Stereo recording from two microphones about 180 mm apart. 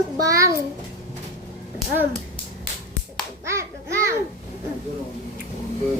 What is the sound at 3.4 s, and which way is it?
Babbling, 15° right (ahead or behind).